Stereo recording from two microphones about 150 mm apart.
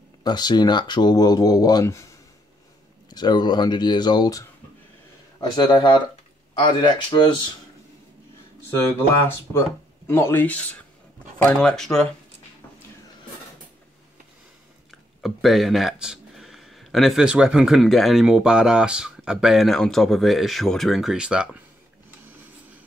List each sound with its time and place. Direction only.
0.2 s speech: 30° left (ahead or behind)
3.1 s speech: 30° left (ahead or behind)
10.0 s speech: 15° left (ahead or behind)
15.2 s speech: centre (ahead or behind)